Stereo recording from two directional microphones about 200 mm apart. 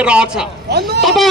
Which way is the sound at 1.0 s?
Centre (ahead or behind).